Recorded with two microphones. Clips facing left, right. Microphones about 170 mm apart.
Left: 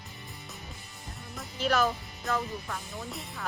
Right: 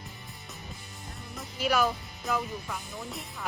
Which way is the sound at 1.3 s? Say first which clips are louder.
Even; 10° right (ahead or behind).